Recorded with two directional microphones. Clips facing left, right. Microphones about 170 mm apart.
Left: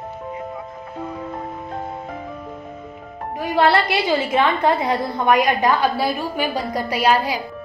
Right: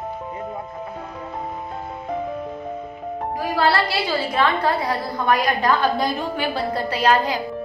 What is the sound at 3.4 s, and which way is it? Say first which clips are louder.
A woman's voice: left 3 dB; 20° left (ahead or behind).